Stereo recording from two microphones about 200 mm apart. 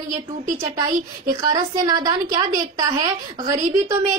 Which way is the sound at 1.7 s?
20° right (ahead or behind).